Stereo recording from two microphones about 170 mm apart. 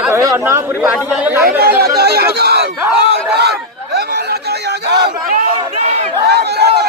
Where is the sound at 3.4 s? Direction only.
75° right (ahead or behind).